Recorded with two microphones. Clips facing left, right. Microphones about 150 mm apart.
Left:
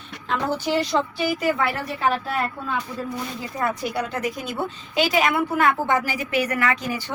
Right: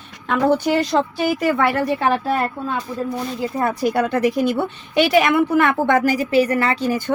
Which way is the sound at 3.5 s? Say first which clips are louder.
Right 5 dB; 30° right (ahead or behind).